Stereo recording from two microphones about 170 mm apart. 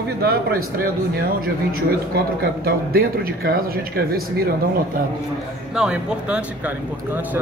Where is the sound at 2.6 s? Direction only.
65° right (ahead or behind).